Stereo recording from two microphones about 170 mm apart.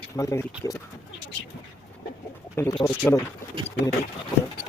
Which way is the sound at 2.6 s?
15° left (ahead or behind).